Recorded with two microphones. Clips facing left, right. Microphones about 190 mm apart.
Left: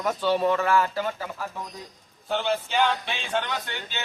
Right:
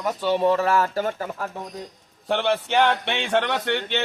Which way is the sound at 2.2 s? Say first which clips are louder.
Right 4 dB; 70° right (ahead or behind).